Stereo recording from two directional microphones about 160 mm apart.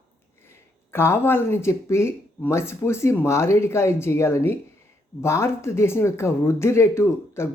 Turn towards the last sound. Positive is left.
turn(degrees=15)  # may be behind; listen again after turning